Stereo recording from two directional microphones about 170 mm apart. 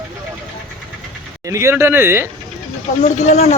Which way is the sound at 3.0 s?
40° left (ahead or behind).